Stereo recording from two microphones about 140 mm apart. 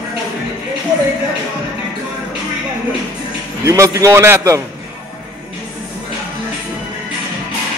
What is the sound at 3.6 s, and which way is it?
Speech, 25° right (ahead or behind).